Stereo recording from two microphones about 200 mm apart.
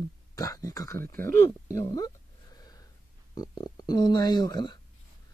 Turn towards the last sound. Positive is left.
turn(degrees=20)  # may be behind; listen again after turning